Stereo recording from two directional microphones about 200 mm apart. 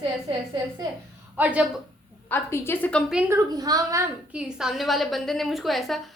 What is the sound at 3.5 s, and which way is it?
Speech, 20° right (ahead or behind).